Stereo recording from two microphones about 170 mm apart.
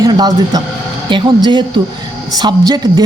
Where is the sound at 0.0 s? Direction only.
25° right (ahead or behind).